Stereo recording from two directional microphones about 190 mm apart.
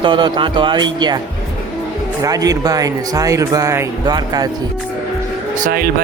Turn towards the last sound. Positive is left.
turn(degrees=-50)  # may be behind; listen again after turning